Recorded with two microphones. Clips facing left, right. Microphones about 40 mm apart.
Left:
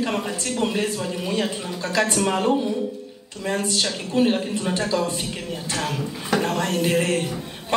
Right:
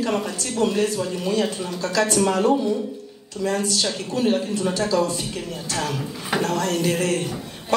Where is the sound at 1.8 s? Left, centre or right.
Left.